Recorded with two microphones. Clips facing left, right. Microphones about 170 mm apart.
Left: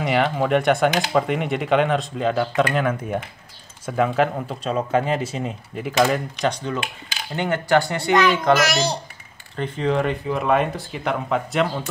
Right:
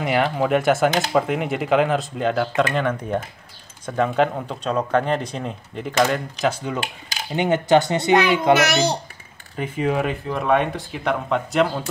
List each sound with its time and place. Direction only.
0.0 s speech: centre (ahead or behind)
6.4 s speech: 10° right (ahead or behind)
8.5 s a child's voice: 60° right (ahead or behind)
9.6 s speech: 10° right (ahead or behind)